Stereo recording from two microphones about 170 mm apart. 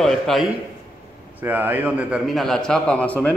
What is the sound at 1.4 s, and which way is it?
A man's voice, 10° right (ahead or behind).